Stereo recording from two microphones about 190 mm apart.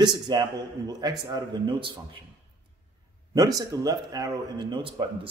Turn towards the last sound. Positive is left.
turn(degrees=-25)  # may be behind; listen again after turning